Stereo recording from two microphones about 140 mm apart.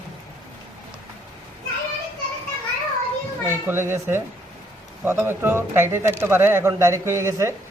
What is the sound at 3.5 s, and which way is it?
Speech, 15° right (ahead or behind).